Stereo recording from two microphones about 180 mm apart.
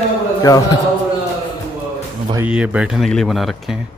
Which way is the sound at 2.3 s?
5° right (ahead or behind).